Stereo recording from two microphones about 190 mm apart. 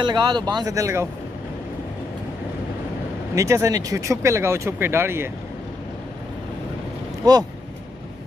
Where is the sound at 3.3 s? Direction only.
15° right (ahead or behind).